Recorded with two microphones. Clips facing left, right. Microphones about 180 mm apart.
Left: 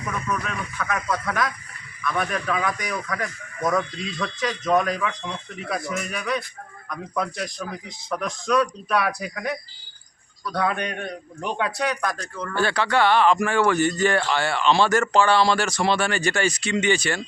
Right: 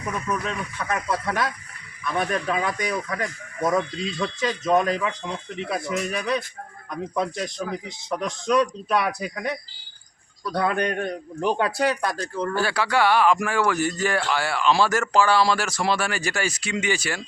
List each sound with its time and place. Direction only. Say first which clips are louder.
0.3 s speech: right 1 dB; 30° right (ahead or behind)
12.5 s a man's voice: left 2 dB; 5° right (ahead or behind)